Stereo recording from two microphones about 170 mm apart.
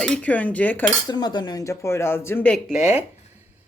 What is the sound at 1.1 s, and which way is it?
Speech, 25° left (ahead or behind).